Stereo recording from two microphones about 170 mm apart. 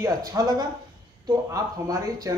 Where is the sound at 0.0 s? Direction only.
20° right (ahead or behind).